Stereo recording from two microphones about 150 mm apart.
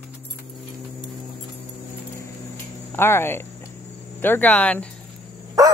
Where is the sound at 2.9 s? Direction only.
15° left (ahead or behind).